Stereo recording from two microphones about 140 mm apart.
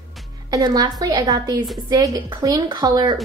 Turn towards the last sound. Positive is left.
turn(degrees=-30)  # may be behind; listen again after turning